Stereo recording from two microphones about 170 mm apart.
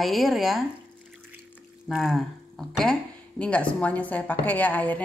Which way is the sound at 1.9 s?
Centre (ahead or behind).